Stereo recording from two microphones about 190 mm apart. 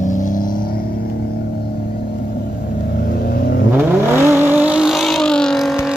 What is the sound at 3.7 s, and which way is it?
Vehicle, 10° right (ahead or behind).